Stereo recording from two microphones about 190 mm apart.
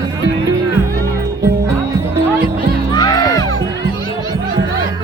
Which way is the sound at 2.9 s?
20° left (ahead or behind).